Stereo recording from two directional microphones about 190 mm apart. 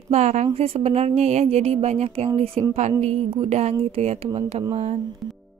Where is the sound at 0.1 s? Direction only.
35° right (ahead or behind).